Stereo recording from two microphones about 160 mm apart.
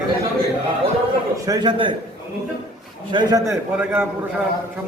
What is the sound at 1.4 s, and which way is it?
Speech, 25° right (ahead or behind).